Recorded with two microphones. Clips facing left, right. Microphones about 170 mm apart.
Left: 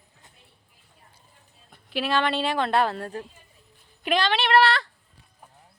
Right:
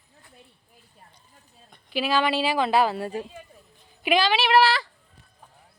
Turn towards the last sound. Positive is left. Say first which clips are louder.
# right 1 dB
turn(degrees=0)  # may be behind; listen again after turning